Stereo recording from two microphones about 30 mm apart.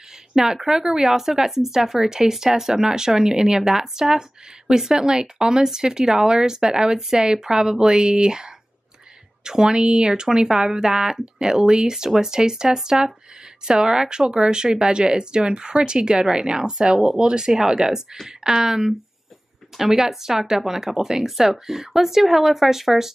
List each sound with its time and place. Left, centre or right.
0.3 s speech: centre
2.0 s speech: centre